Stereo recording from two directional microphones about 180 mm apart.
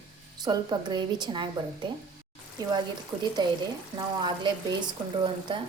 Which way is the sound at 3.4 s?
25° right (ahead or behind).